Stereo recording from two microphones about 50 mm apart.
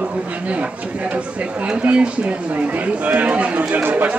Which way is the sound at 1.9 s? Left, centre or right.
Right.